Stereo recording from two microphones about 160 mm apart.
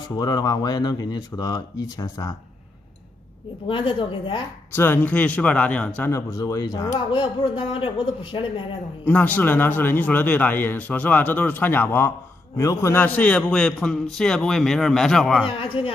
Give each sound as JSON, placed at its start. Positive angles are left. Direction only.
{"t": 0.2, "sound": "speech", "side_deg": 25}
{"t": 3.6, "sound": "a woman's voice", "side_deg": 30}
{"t": 4.7, "sound": "speech", "side_deg": 15}
{"t": 9.0, "sound": "a man's voice", "side_deg": 10}
{"t": 15.4, "sound": "a woman's voice", "side_deg": 35}